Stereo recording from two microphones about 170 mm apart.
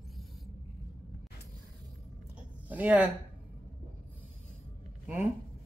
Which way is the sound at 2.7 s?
10° right (ahead or behind).